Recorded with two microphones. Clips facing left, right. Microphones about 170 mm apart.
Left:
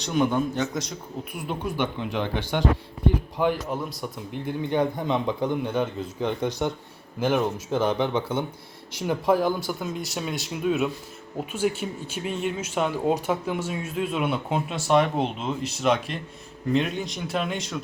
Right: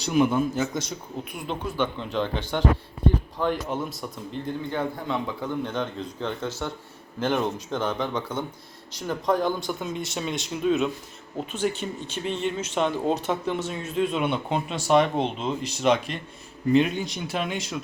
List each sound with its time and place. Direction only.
0.0 s a man's voice: 5° right (ahead or behind)
1.4 s speech: 10° left (ahead or behind)
3.7 s a man's voice: centre (ahead or behind)
4.3 s a man's voice: 15° left (ahead or behind); by 17.8 s centre (ahead or behind)